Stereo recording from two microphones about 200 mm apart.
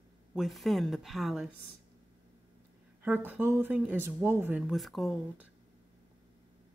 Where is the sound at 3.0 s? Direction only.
10° right (ahead or behind).